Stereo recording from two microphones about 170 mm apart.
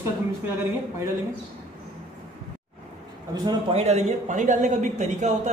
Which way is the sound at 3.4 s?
35° right (ahead or behind).